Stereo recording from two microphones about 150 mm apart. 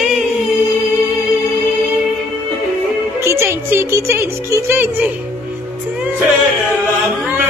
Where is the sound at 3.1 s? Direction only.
15° right (ahead or behind).